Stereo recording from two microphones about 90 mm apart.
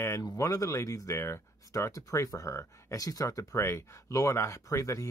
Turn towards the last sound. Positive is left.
turn(degrees=35)  # may be behind; listen again after turning